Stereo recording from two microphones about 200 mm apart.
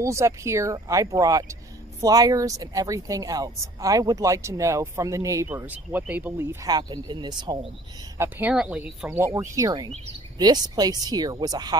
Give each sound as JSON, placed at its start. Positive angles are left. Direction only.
{"t": 0.0, "sound": "speech", "side_deg": -15}
{"t": 8.2, "sound": "speech", "side_deg": -10}